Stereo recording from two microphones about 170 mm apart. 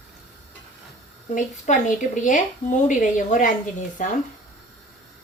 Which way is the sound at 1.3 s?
50° left (ahead or behind).